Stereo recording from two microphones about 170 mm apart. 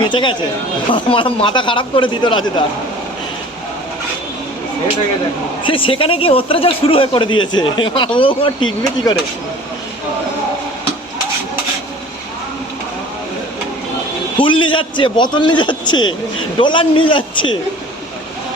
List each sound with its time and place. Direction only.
0.0 s speech: 30° left (ahead or behind)
5.6 s a man's voice: 30° left (ahead or behind)
9.1 s speech: 20° left (ahead or behind)
14.3 s speech: 30° left (ahead or behind)